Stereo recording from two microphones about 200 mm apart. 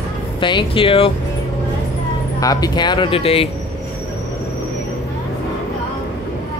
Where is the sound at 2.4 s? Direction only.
20° left (ahead or behind).